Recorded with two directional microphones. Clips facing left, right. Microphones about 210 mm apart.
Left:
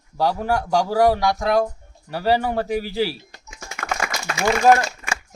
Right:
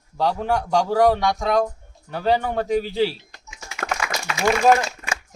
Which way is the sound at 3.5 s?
50° left (ahead or behind).